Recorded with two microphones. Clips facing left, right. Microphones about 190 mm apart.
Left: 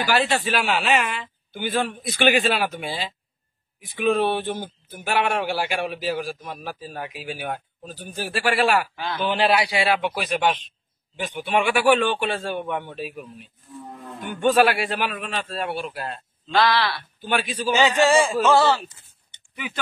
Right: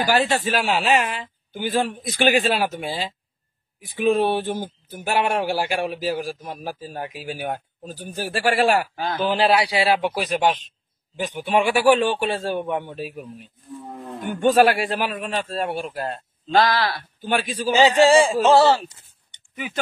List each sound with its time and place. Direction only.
0.0 s a man's voice: 45° right (ahead or behind)
4.1 s a man's voice: 40° right (ahead or behind)